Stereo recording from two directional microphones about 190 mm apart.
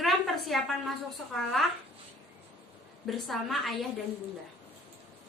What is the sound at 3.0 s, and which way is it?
Speech, centre (ahead or behind).